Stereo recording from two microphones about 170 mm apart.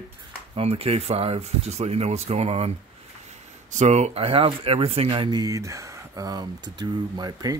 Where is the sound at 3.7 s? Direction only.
40° right (ahead or behind).